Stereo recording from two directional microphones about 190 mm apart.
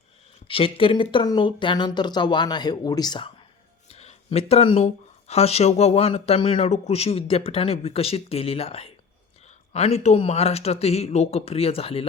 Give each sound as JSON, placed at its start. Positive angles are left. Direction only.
{"t": 0.4, "sound": "speech", "side_deg": 30}
{"t": 3.8, "sound": "a sound", "side_deg": 35}
{"t": 5.3, "sound": "speech", "side_deg": 35}